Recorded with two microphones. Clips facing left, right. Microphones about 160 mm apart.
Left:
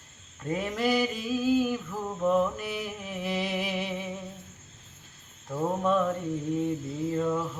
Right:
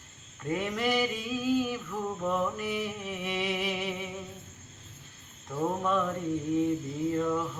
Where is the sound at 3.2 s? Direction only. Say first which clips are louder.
Left 2 dB; 35° left (ahead or behind).